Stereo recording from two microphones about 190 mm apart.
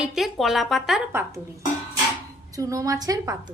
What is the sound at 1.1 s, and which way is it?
A woman's voice, 15° right (ahead or behind).